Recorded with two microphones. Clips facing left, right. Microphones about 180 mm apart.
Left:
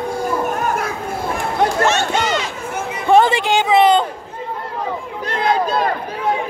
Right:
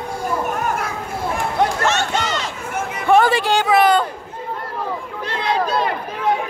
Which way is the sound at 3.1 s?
20° left (ahead or behind).